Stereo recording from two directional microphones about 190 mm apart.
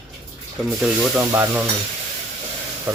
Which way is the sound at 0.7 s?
Centre (ahead or behind).